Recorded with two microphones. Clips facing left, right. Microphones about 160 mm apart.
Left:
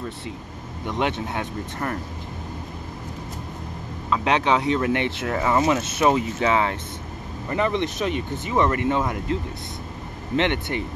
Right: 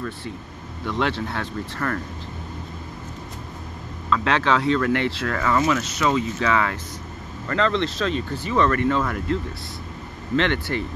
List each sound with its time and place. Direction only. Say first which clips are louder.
0.8 s speech: right 1 dB; 20° left (ahead or behind)
4.1 s speech: even; 15° left (ahead or behind)